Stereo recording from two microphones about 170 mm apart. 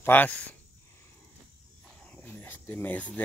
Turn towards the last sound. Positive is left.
turn(degrees=10)  # may be behind; listen again after turning